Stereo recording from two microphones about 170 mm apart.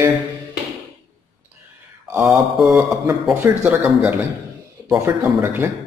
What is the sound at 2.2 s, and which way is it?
Mantra, centre (ahead or behind).